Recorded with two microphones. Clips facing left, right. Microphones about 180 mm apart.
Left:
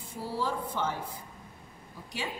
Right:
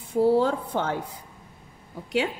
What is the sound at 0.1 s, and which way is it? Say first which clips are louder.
A woman's voice: right 13 dB; 60° right (ahead or behind).